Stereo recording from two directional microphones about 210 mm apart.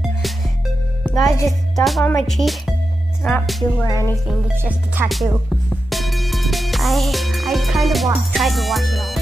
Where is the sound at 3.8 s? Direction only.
15° left (ahead or behind).